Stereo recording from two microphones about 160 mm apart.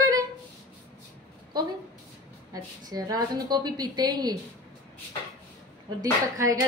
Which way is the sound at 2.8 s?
25° right (ahead or behind).